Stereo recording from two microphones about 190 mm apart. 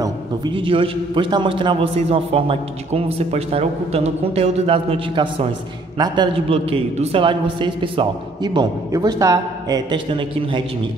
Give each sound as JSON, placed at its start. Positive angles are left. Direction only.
{"t": 0.0, "sound": "a man's voice", "side_deg": -25}